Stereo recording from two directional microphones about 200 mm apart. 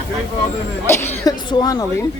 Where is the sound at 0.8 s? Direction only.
10° left (ahead or behind).